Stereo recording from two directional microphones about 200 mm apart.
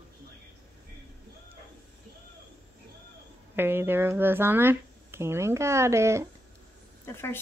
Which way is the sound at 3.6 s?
10° right (ahead or behind).